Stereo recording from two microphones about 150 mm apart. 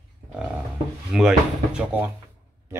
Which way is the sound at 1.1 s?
5° right (ahead or behind).